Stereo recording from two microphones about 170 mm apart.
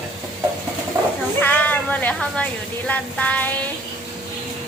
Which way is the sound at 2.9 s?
10° left (ahead or behind).